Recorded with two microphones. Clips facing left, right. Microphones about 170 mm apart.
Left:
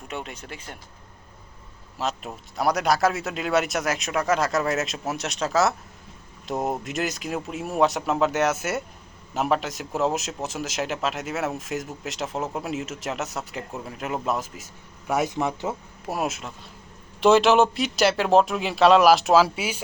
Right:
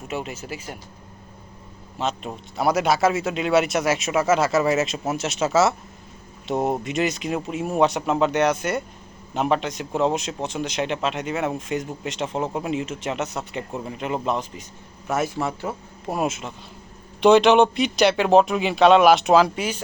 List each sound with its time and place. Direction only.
0.1 s a man's voice: 5° right (ahead or behind)
2.0 s a man's voice: centre (ahead or behind)
15.0 s a man's voice: 15° left (ahead or behind)
16.0 s a man's voice: centre (ahead or behind)